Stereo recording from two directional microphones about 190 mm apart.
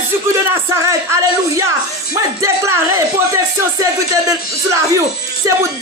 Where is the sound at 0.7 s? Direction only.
15° right (ahead or behind).